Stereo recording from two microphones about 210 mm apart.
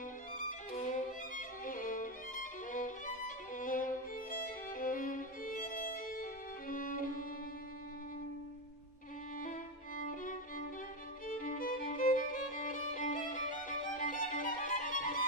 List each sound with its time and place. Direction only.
1.7 s violin: 40° left (ahead or behind)
9.4 s violin: 40° left (ahead or behind)
11.2 s music: 40° left (ahead or behind)